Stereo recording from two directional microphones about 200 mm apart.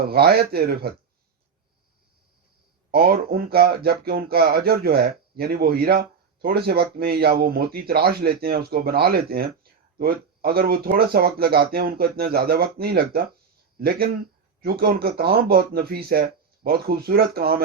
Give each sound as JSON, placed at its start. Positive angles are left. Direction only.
{"t": 0.1, "sound": "speech", "side_deg": -50}
{"t": 2.9, "sound": "speech", "side_deg": -50}